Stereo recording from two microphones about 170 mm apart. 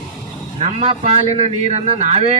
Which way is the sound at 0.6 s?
40° right (ahead or behind).